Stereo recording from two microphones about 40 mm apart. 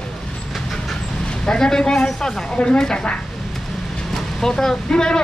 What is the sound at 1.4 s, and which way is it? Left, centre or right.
Speech, centre.